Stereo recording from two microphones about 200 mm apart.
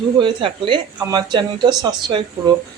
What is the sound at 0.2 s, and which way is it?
Speech, 25° right (ahead or behind).